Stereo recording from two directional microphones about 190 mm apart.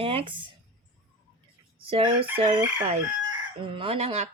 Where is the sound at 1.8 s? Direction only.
30° right (ahead or behind).